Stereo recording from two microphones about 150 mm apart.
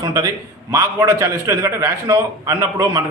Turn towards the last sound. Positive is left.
turn(degrees=-20)  # may be behind; listen again after turning